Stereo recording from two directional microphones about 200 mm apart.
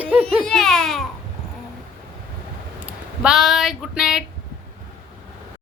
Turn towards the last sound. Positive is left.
turn(degrees=0)  # may be behind; listen again after turning